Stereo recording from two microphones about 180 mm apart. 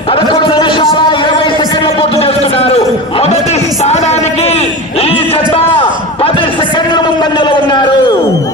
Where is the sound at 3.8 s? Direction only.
35° left (ahead or behind).